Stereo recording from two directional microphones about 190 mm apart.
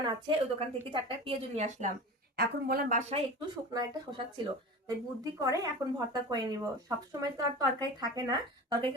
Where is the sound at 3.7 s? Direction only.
20° right (ahead or behind).